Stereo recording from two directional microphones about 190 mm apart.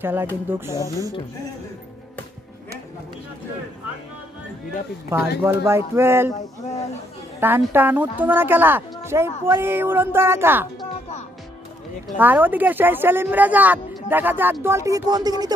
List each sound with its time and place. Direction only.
0.0 s speech: 10° right (ahead or behind)
0.7 s speech: 15° left (ahead or behind)
5.4 s speech: 10° right (ahead or behind)
7.3 s speech: 10° right (ahead or behind)
12.2 s speech: 10° right (ahead or behind)